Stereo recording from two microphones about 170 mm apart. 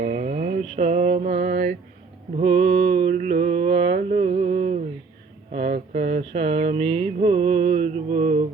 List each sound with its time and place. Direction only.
0.0 s mantra: 45° right (ahead or behind)
5.5 s a sound: 45° right (ahead or behind)
6.3 s speech: 40° right (ahead or behind)
6.8 s mantra: 30° right (ahead or behind)